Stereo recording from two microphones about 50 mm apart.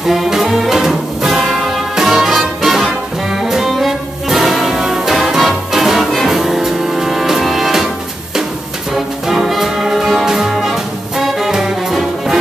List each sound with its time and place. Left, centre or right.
0.0 s music: centre
8.9 s music: centre